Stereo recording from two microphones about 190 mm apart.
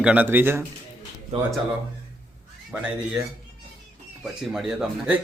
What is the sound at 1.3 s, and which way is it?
Speech, 35° right (ahead or behind).